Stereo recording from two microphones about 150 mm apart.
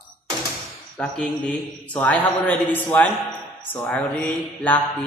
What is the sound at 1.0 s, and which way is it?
A man's voice, 5° left (ahead or behind).